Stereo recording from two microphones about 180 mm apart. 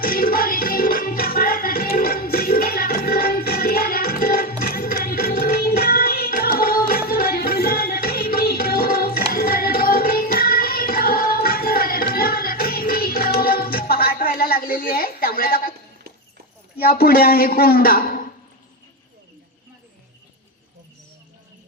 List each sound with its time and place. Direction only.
0.0 s music: 55° left (ahead or behind)
16.7 s a woman's voice: 60° left (ahead or behind)